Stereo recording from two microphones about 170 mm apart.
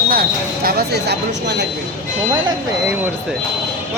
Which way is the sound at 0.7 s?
70° right (ahead or behind).